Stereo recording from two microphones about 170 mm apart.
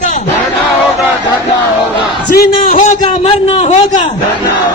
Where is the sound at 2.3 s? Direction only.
65° left (ahead or behind).